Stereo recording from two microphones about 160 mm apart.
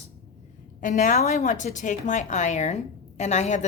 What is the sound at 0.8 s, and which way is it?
A woman's voice, 50° left (ahead or behind).